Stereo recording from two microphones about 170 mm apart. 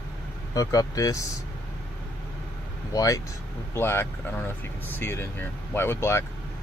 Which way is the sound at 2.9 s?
20° left (ahead or behind).